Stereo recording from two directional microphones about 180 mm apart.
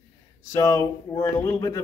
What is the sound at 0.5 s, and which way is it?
Speech, 15° left (ahead or behind).